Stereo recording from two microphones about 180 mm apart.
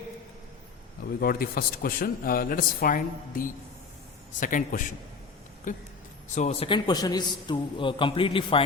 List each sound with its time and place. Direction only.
1.2 s a man's voice: 55° left (ahead or behind); by 8.6 s 30° left (ahead or behind)